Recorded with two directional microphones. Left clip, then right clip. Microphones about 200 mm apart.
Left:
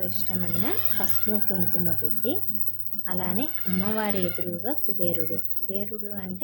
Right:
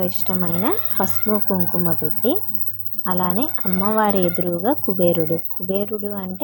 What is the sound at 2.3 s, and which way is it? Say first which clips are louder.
Speech: right 9 dB; 20° right (ahead or behind).